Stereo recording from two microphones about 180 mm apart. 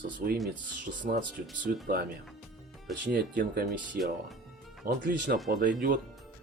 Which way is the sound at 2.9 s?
60° right (ahead or behind).